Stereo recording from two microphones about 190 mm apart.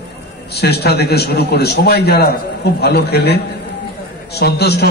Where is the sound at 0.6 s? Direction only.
60° left (ahead or behind).